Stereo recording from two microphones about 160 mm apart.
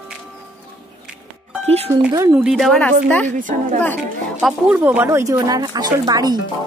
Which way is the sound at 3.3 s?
55° right (ahead or behind).